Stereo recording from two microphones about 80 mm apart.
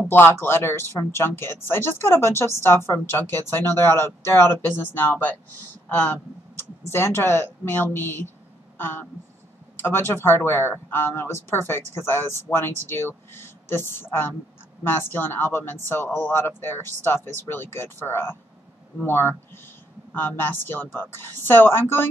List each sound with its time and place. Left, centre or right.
0.1 s speech: left
6.9 s speech: left